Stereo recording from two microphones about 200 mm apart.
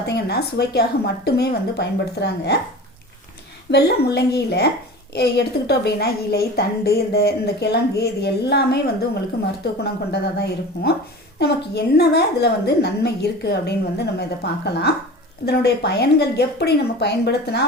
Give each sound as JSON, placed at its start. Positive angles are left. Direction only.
{"t": 0.0, "sound": "a woman's voice", "side_deg": 55}
{"t": 3.7, "sound": "a woman's voice", "side_deg": 55}
{"t": 9.8, "sound": "a woman's voice", "side_deg": 55}